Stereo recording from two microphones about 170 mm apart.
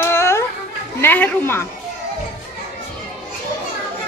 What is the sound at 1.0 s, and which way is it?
Speech, 10° left (ahead or behind).